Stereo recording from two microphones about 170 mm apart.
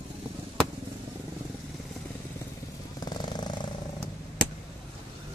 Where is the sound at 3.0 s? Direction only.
25° left (ahead or behind).